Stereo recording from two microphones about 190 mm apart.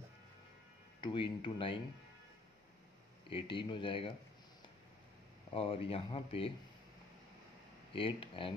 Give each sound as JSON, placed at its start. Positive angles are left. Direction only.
{"t": 1.0, "sound": "speech", "side_deg": 25}
{"t": 3.3, "sound": "speech", "side_deg": 25}
{"t": 5.5, "sound": "speech", "side_deg": 30}
{"t": 7.9, "sound": "speech", "side_deg": 30}